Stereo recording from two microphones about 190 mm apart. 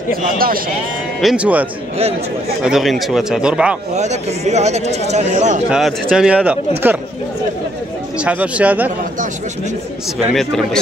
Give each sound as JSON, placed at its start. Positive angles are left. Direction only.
{"t": 1.2, "sound": "a man's voice", "side_deg": -5}
{"t": 3.9, "sound": "speech", "side_deg": -35}
{"t": 5.7, "sound": "a man's voice", "side_deg": -5}
{"t": 8.2, "sound": "speech", "side_deg": -5}
{"t": 10.3, "sound": "a man's voice", "side_deg": 0}